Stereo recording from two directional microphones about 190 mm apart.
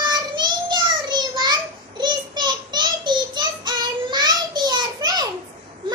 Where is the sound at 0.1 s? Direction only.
20° right (ahead or behind).